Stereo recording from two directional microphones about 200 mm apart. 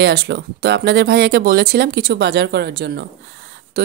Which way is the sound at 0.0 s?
55° right (ahead or behind).